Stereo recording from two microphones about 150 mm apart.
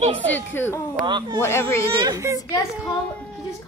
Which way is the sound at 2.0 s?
20° right (ahead or behind).